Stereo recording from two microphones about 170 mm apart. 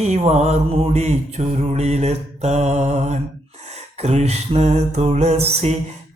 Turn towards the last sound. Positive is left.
turn(degrees=-40)  # may be behind; listen again after turning